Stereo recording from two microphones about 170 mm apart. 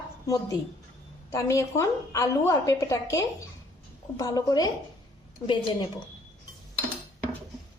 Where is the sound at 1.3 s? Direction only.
20° left (ahead or behind).